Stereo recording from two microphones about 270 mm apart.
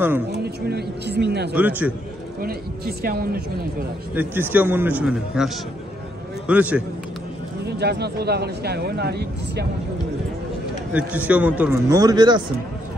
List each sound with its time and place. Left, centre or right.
0.4 s speech: right
1.5 s a man's voice: centre
2.4 s speech: right
4.1 s a man's voice: centre
7.6 s speech: right
10.9 s a man's voice: centre